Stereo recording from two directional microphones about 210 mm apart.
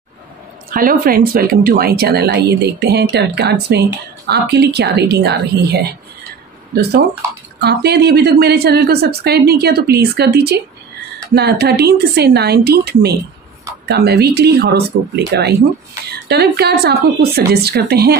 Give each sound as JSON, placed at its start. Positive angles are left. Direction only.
{"t": 0.7, "sound": "speech", "side_deg": -40}